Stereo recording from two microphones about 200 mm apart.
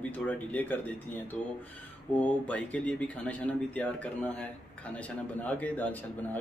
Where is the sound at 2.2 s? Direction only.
5° left (ahead or behind).